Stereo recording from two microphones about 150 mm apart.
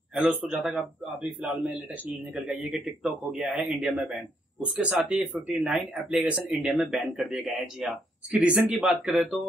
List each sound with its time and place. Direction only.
0.1 s a man's voice: 10° right (ahead or behind)